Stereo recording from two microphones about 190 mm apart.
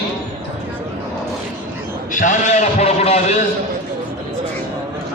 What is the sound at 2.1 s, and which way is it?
A man's voice, 40° left (ahead or behind).